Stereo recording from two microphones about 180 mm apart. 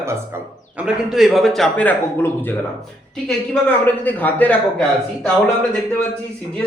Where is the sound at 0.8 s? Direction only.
5° right (ahead or behind); by 2.6 s 10° left (ahead or behind).